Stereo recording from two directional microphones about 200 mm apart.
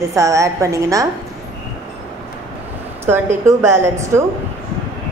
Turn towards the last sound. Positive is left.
turn(degrees=-15)  # may be behind; listen again after turning